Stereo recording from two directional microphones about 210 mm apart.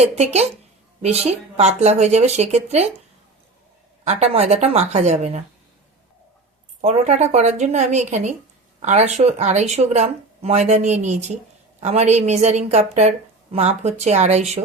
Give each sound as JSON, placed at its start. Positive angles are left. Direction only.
{"t": 1.0, "sound": "a woman's voice", "side_deg": -30}
{"t": 4.0, "sound": "a woman's voice", "side_deg": -30}
{"t": 6.8, "sound": "a woman's voice", "side_deg": -30}